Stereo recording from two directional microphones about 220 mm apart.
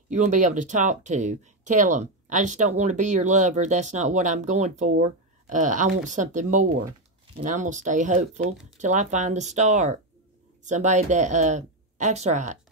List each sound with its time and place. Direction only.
0.1 s speech: 35° right (ahead or behind)